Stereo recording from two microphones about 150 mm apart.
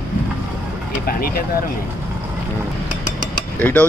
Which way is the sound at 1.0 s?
80° left.